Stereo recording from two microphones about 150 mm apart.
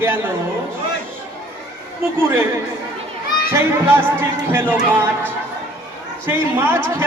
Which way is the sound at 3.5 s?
15° right (ahead or behind).